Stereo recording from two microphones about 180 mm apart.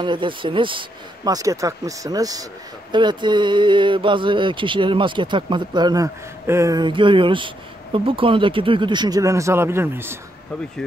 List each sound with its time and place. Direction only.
0.0 s speech: 25° right (ahead or behind)